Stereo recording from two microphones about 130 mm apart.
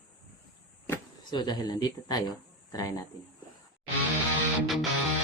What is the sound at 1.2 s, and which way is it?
Speech, 35° left (ahead or behind).